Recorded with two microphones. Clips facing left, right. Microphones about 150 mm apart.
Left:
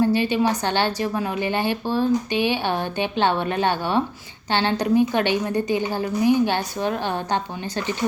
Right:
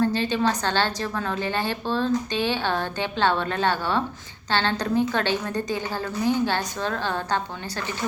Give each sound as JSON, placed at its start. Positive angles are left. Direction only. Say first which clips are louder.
{"t": 0.0, "sound": "a woman's voice", "louder": "left 3 dB", "side_deg": 10}